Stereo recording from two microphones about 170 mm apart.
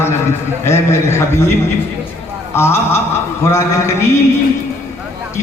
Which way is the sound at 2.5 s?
15° left (ahead or behind).